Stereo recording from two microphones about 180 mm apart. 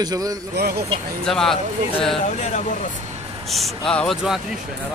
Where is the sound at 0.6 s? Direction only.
65° right (ahead or behind).